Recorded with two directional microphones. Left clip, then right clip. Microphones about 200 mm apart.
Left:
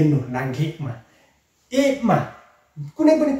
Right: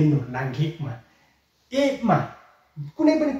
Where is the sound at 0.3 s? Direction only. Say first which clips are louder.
Left 3 dB; 5° left (ahead or behind).